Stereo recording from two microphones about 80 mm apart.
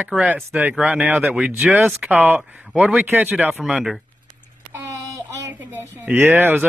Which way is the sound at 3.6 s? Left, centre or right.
Centre.